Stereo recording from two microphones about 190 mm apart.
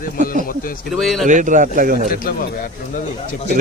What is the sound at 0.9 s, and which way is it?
Speech, centre (ahead or behind).